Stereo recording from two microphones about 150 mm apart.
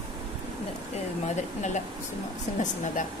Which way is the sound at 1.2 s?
50° left (ahead or behind).